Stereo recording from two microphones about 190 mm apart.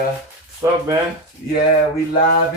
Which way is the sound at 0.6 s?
15° right (ahead or behind).